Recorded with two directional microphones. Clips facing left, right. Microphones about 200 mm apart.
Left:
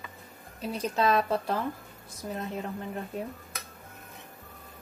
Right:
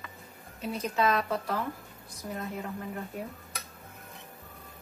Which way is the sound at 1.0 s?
30° left (ahead or behind).